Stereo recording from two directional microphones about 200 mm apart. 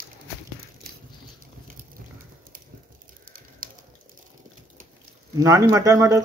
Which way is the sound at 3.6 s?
45° right (ahead or behind).